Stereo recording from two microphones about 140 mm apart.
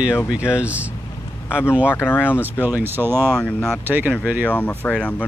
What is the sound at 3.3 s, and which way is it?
Speech, 10° left (ahead or behind).